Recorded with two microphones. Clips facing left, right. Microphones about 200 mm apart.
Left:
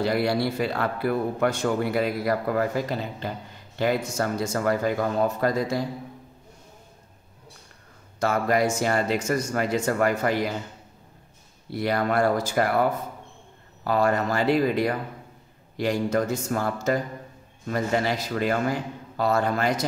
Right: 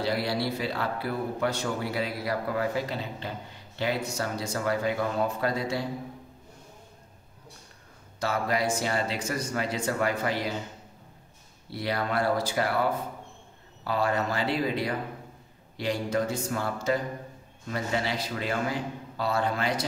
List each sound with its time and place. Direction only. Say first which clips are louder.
0.0 s a man's voice: left 5 dB; 50° left (ahead or behind)
8.2 s a man's voice: left 5 dB; 50° left (ahead or behind)
11.7 s a man's voice: left 5 dB; 50° left (ahead or behind)
13.8 s a man's voice: left 5 dB; 45° left (ahead or behind)